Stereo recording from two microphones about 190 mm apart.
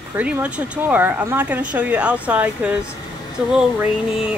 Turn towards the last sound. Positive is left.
turn(degrees=-5)  # may be behind; listen again after turning